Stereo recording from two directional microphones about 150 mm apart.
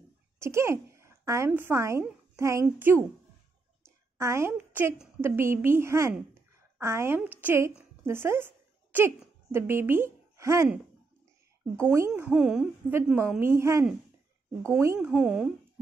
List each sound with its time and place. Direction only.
0.4 s a woman's voice: 20° right (ahead or behind)
3.8 s a sound: 20° right (ahead or behind)
5.2 s a woman's voice: 15° right (ahead or behind)
11.7 s speech: 20° right (ahead or behind)
12.2 s a woman's voice: 5° right (ahead or behind)
15.0 s speech: 5° right (ahead or behind)